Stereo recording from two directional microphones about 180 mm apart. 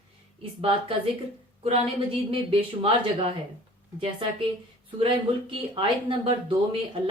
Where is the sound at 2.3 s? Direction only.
30° right (ahead or behind).